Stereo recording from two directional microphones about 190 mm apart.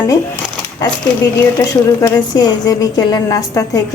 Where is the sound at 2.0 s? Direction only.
20° left (ahead or behind).